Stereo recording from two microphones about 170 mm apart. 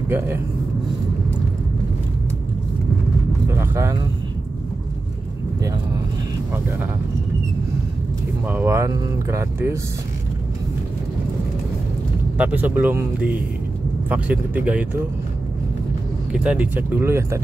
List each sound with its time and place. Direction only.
3.4 s vehicle: 15° right (ahead or behind)
8.5 s speech: 15° right (ahead or behind)
12.4 s speech: 10° right (ahead or behind)
16.3 s speech: 5° right (ahead or behind)